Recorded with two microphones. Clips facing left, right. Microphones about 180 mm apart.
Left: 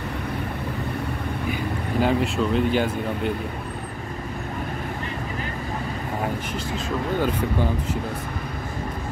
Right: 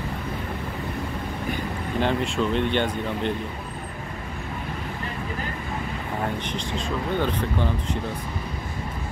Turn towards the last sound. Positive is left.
turn(degrees=5)  # may be behind; listen again after turning